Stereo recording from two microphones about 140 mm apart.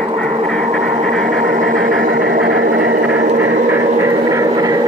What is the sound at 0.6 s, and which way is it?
Dog, 55° right (ahead or behind).